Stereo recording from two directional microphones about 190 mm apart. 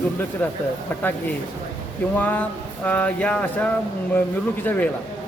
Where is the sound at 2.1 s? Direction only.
10° left (ahead or behind).